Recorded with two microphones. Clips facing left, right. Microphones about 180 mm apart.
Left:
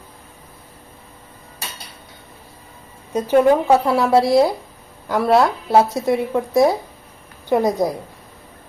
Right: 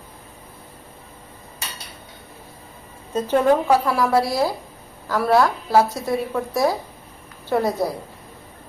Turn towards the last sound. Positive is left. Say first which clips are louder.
# left 3 dB
turn(degrees=15)  # may be behind; listen again after turning